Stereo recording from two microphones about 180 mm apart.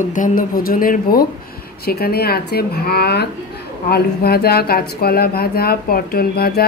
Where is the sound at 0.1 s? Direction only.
45° left (ahead or behind).